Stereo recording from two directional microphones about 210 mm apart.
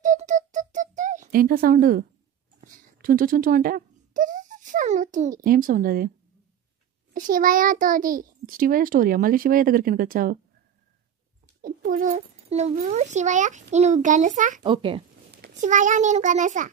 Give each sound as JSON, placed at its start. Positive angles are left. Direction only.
{"t": 0.0, "sound": "music", "side_deg": -35}
{"t": 2.6, "sound": "speech", "side_deg": -40}
{"t": 7.2, "sound": "a child's voice", "side_deg": -40}
{"t": 11.6, "sound": "a child's voice", "side_deg": -40}
{"t": 14.6, "sound": "a child's voice", "side_deg": -25}
{"t": 15.3, "sound": "a sound", "side_deg": -50}
{"t": 15.6, "sound": "a child's voice", "side_deg": -35}